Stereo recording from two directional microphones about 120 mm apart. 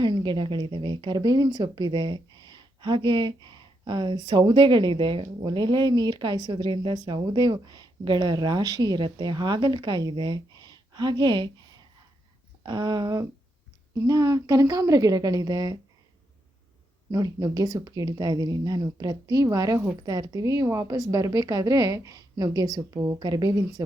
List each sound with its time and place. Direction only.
0.0 s a woman's voice: 40° right (ahead or behind)
12.6 s speech: 35° right (ahead or behind)
17.1 s speech: 30° right (ahead or behind)